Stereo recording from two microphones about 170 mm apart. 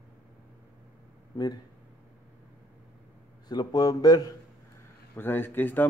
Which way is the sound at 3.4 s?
25° left (ahead or behind).